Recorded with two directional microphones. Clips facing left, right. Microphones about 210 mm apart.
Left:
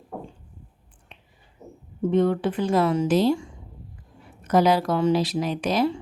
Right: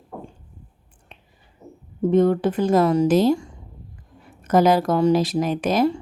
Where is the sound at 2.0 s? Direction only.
45° right (ahead or behind).